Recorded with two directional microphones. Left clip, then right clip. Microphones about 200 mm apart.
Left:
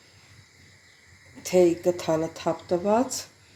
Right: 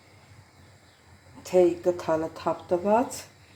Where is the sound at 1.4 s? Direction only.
20° left (ahead or behind).